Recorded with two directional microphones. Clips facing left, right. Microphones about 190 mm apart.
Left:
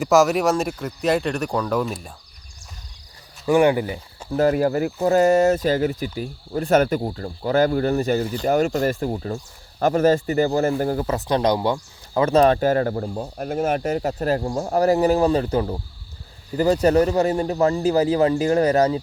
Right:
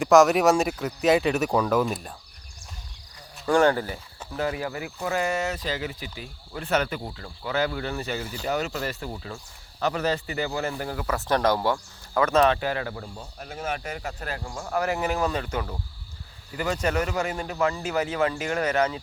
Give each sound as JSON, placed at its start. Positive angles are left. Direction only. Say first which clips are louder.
{"t": 0.0, "sound": "speech", "louder": "even", "side_deg": 0}
{"t": 3.4, "sound": "speech", "louder": "left 4 dB", "side_deg": 10}
{"t": 4.4, "sound": "speech", "louder": "left 10 dB", "side_deg": 45}
{"t": 11.3, "sound": "speech", "louder": "left 2 dB", "side_deg": 20}